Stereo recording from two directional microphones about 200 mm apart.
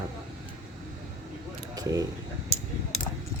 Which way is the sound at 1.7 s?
20° right (ahead or behind).